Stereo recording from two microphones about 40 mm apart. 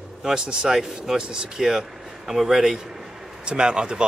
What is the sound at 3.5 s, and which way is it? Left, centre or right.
Speech, right.